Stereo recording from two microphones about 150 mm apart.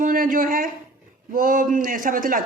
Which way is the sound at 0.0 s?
65° right (ahead or behind).